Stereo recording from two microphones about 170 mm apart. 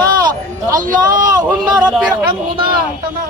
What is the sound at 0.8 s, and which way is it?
Speech, 50° right (ahead or behind).